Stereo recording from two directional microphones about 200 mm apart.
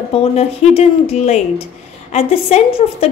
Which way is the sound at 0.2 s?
30° left (ahead or behind).